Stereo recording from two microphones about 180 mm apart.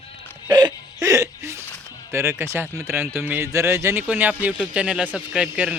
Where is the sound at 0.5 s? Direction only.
20° right (ahead or behind).